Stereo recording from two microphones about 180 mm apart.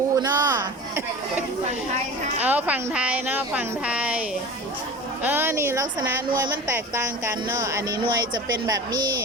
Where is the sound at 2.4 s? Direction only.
10° right (ahead or behind).